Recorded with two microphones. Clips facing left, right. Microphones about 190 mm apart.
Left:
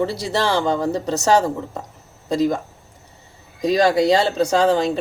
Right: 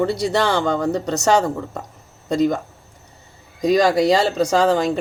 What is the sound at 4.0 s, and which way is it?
Speech, 30° left (ahead or behind).